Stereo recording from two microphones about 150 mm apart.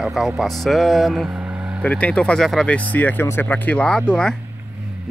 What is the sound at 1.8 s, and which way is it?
Speech, 10° left (ahead or behind).